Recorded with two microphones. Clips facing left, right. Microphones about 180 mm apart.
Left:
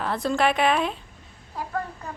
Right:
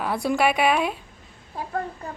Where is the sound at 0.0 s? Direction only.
10° right (ahead or behind).